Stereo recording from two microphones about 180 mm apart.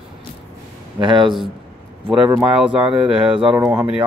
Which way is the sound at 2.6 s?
5° right (ahead or behind).